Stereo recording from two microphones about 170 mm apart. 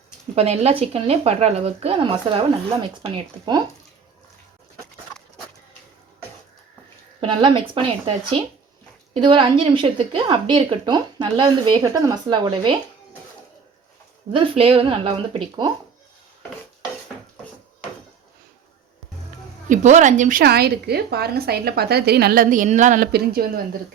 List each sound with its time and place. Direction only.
0.3 s a woman's voice: 40° right (ahead or behind)
7.2 s a woman's voice: 30° right (ahead or behind)
14.3 s speech: 35° right (ahead or behind)
19.6 s a woman's voice: 45° right (ahead or behind)
23.1 s speech: 65° right (ahead or behind)